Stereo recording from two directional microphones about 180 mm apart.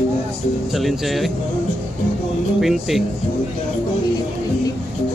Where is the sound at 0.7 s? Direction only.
Centre (ahead or behind).